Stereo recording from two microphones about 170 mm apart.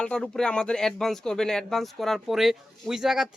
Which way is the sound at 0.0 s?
5° left (ahead or behind).